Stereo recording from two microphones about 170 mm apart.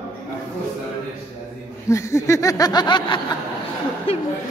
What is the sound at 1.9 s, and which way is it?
Snicker, 20° left (ahead or behind).